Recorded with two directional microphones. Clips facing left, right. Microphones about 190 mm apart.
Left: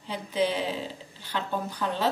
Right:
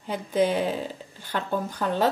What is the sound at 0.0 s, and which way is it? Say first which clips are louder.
Speech: right 4 dB; 50° right (ahead or behind).